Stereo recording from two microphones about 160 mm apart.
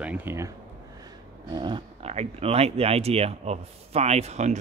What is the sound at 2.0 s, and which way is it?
Speech, 40° right (ahead or behind).